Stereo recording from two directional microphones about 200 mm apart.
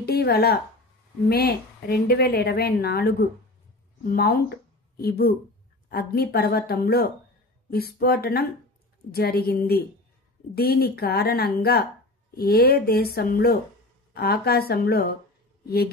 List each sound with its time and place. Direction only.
0.0 s speech: 50° left (ahead or behind)